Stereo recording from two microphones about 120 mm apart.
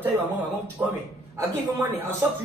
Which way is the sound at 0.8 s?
20° right (ahead or behind).